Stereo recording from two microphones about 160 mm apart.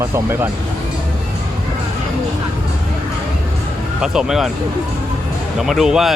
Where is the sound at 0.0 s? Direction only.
15° right (ahead or behind).